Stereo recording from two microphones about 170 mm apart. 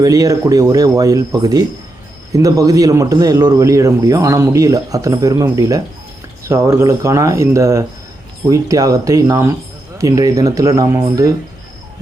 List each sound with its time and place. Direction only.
0.0 s a man's voice: 20° right (ahead or behind)